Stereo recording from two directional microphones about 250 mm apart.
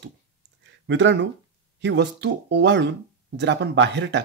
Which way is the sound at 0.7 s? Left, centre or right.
Right.